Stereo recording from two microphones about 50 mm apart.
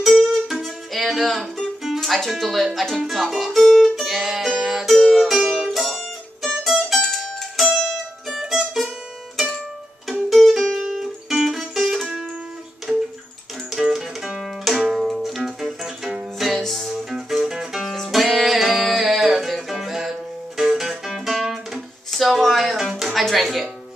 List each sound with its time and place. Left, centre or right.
0.2 s music: centre
2.0 s speech: centre
4.6 s music: centre
5.4 s music: centre
5.7 s music: centre
8.3 s music: centre
10.3 s music: centre